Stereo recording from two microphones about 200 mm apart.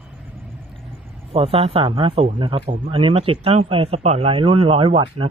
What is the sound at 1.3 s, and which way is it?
Speech, 30° right (ahead or behind).